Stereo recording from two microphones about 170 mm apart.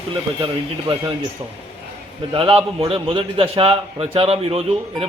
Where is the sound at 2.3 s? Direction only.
30° right (ahead or behind).